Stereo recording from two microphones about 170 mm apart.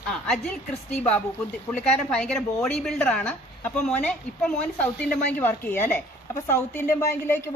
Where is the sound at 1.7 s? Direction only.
5° left (ahead or behind).